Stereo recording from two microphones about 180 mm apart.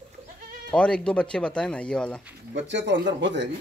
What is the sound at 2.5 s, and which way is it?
Speech, 85° right.